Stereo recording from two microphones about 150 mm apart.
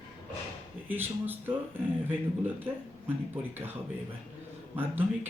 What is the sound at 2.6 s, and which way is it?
A man's voice, 15° right (ahead or behind).